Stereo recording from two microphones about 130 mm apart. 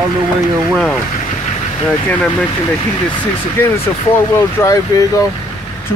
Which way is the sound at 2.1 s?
5° left (ahead or behind).